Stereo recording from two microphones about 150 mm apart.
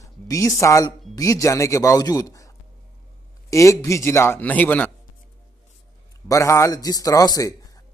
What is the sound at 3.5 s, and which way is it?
Speech, 20° left (ahead or behind).